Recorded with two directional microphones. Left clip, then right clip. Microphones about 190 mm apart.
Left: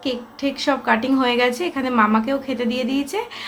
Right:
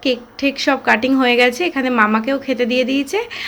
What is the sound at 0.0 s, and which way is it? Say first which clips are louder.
A woman's voice: right 6 dB; 20° right (ahead or behind).